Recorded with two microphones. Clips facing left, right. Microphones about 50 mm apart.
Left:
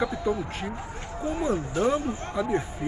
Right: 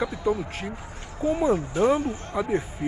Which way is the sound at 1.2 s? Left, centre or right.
Centre.